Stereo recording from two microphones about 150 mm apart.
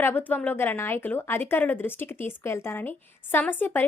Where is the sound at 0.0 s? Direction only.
15° left (ahead or behind).